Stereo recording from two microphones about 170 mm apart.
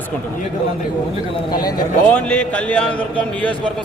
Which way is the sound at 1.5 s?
25° left (ahead or behind).